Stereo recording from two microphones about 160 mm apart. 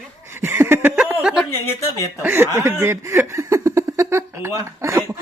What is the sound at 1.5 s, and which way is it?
Speech, 15° left (ahead or behind).